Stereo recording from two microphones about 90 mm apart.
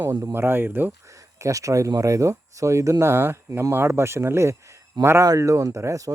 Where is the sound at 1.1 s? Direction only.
35° right (ahead or behind).